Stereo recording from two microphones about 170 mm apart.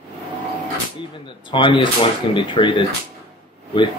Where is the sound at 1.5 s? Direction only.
30° left (ahead or behind).